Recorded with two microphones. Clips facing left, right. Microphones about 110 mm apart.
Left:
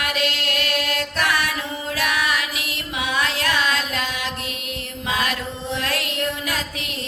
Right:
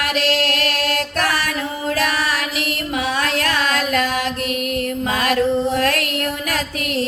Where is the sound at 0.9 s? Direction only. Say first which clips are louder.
Right 2 dB; 35° right (ahead or behind).